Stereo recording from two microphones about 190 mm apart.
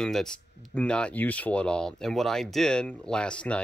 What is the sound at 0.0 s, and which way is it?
Speech, 5° left (ahead or behind).